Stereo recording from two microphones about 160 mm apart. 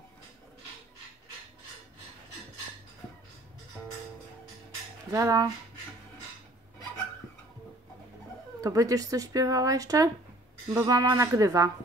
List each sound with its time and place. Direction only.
5.1 s speech: 20° right (ahead or behind)
8.5 s speech: 20° right (ahead or behind)